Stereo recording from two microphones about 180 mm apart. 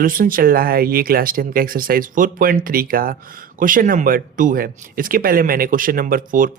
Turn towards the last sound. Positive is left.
turn(degrees=-50)  # may be behind; listen again after turning